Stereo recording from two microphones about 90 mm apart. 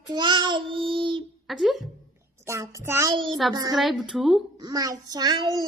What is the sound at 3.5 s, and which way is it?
Child singing, 50° right (ahead or behind).